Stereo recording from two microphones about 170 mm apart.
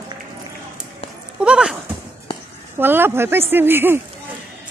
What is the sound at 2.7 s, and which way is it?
A woman's voice, 10° right (ahead or behind).